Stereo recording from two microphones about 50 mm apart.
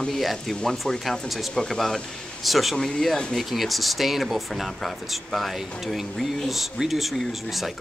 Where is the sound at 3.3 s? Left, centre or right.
Centre.